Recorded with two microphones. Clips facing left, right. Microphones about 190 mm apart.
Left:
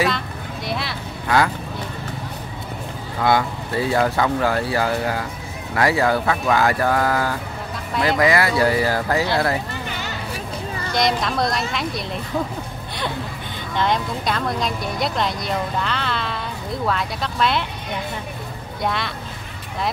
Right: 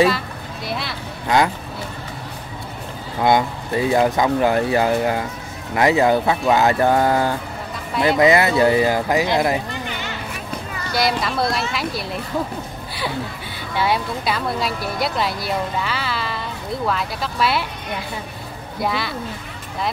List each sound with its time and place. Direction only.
0.7 s a sound: centre (ahead or behind)
3.2 s speech: 20° right (ahead or behind)
10.9 s speech: 5° right (ahead or behind)
13.7 s speech: 5° right (ahead or behind)
18.8 s speech: 5° right (ahead or behind)